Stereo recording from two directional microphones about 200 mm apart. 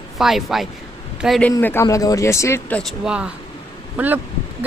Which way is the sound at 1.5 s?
10° left (ahead or behind).